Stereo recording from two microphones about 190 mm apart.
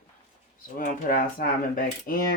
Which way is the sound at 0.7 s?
50° left (ahead or behind).